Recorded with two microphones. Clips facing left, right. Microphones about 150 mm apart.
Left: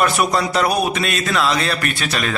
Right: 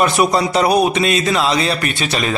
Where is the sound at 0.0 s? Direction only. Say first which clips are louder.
Right 3 dB; centre (ahead or behind).